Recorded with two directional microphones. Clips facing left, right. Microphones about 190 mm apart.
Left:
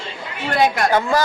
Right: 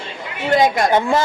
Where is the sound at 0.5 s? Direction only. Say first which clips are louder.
Right 1 dB; 20° right (ahead or behind).